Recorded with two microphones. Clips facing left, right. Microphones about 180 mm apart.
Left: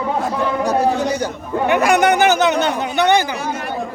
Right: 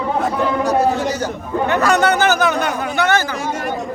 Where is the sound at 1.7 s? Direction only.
15° left (ahead or behind).